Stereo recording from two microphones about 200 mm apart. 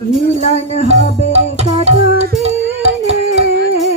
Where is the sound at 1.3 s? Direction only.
30° right (ahead or behind).